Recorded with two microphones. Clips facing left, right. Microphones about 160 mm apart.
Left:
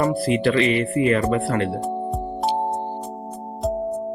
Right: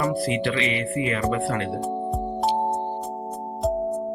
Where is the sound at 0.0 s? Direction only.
40° left (ahead or behind).